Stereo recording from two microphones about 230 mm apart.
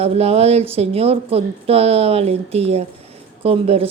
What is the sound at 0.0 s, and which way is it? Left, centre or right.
A woman's voice, right.